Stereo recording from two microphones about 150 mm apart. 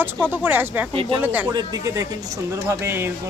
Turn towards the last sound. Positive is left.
turn(degrees=-15)  # may be behind; listen again after turning